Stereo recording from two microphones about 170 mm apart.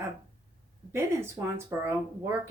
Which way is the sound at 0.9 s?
15° right (ahead or behind).